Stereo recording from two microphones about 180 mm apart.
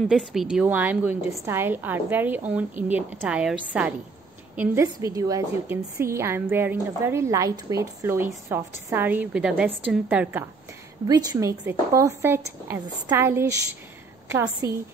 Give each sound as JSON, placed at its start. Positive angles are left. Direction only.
{"t": 0.1, "sound": "a woman's voice", "side_deg": 0}